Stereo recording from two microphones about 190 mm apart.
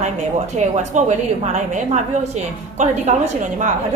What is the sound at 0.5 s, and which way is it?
A woman's voice, 40° right (ahead or behind).